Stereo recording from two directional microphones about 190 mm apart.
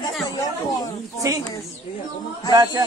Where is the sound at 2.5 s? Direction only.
20° right (ahead or behind).